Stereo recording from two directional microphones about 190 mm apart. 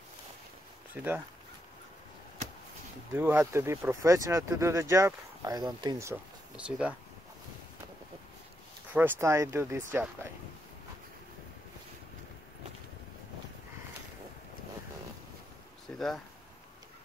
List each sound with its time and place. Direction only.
3.1 s speech: 10° right (ahead or behind)
6.5 s speech: 5° right (ahead or behind)
8.9 s speech: 15° right (ahead or behind)
15.9 s speech: 5° left (ahead or behind)